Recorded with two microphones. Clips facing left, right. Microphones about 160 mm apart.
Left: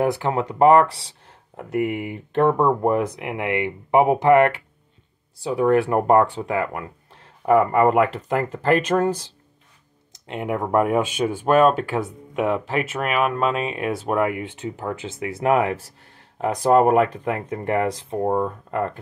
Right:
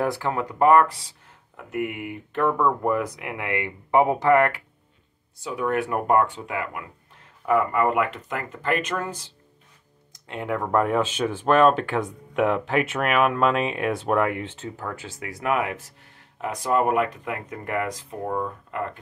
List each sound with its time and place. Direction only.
0.0 s speech: 20° left (ahead or behind)
1.2 s speech: 35° left (ahead or behind)
5.4 s speech: 30° left (ahead or behind)
10.1 s speech: 20° left (ahead or behind)
18.3 s speech: 40° left (ahead or behind)